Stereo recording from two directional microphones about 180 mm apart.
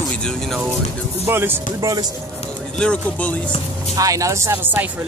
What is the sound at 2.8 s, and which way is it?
Speech, 5° left (ahead or behind).